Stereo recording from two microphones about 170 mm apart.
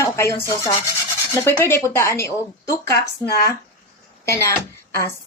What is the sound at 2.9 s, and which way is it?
Speech, 70° left (ahead or behind).